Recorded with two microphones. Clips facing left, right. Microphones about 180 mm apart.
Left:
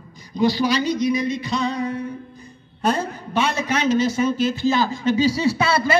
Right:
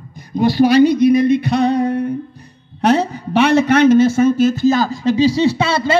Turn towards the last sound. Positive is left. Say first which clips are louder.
# right 3 dB
turn(degrees=-25)  # may be behind; listen again after turning